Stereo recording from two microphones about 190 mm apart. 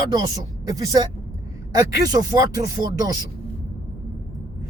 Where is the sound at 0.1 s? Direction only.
20° right (ahead or behind).